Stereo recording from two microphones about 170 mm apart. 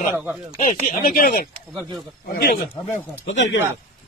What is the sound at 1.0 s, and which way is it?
Speech, 60° left (ahead or behind).